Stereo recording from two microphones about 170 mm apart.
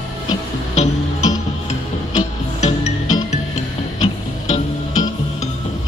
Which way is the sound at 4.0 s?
40° left (ahead or behind).